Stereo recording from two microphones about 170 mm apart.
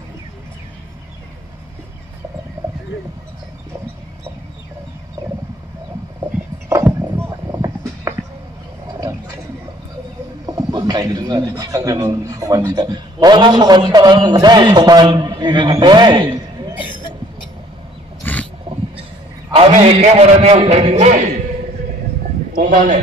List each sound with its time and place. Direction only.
6.7 s horse: 15° right (ahead or behind)
10.4 s a man's voice: 25° right (ahead or behind)
16.7 s cough: 30° left (ahead or behind)
18.2 s wild animals: 10° left (ahead or behind)
19.5 s a man's voice: 40° right (ahead or behind)
22.6 s a man's voice: 45° right (ahead or behind)